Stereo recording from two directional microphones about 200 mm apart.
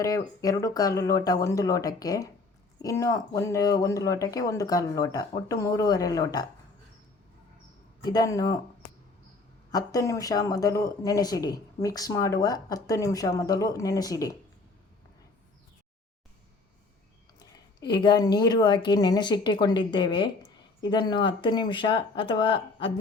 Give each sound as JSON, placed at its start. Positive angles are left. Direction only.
{"t": 0.0, "sound": "speech", "side_deg": 15}
{"t": 8.0, "sound": "a woman's voice", "side_deg": 20}
{"t": 9.7, "sound": "speech", "side_deg": 15}
{"t": 17.4, "sound": "a woman's voice", "side_deg": 20}